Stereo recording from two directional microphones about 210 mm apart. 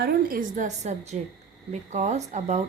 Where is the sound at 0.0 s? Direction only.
45° right (ahead or behind).